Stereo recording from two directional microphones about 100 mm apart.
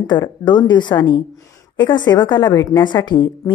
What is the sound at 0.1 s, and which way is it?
A woman's voice, 50° left (ahead or behind).